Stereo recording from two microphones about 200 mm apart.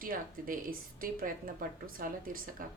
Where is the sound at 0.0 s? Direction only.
45° right (ahead or behind).